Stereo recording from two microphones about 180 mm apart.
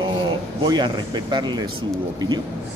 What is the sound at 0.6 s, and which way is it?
Speech, 25° right (ahead or behind).